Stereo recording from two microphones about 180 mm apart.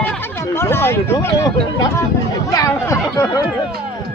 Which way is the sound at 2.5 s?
15° left (ahead or behind).